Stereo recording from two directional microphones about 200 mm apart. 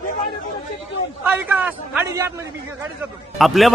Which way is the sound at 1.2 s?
10° right (ahead or behind).